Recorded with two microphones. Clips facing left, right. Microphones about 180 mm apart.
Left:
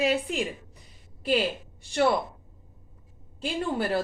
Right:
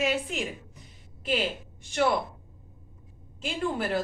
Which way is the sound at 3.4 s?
35° left (ahead or behind).